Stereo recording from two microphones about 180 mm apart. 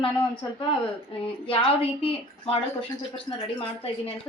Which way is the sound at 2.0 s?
30° left (ahead or behind).